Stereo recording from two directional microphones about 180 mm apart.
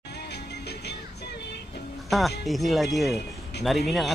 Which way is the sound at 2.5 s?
Centre (ahead or behind).